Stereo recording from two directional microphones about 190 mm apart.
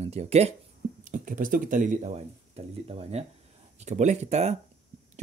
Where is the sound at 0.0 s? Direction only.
35° right (ahead or behind).